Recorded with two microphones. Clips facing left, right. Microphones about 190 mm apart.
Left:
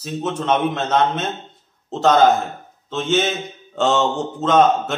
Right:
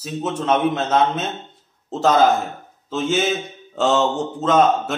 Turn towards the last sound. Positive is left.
turn(degrees=-5)  # may be behind; listen again after turning